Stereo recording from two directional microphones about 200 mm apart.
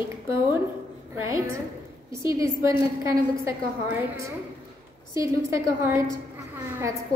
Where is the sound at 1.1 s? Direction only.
15° right (ahead or behind).